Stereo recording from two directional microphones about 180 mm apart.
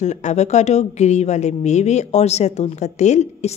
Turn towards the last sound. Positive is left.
turn(degrees=40)  # may be behind; listen again after turning